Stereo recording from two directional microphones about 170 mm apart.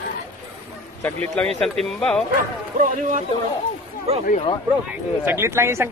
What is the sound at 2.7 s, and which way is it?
Speech, 50° right (ahead or behind).